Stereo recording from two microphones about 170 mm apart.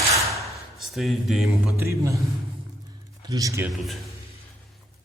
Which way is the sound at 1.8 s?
15° right (ahead or behind).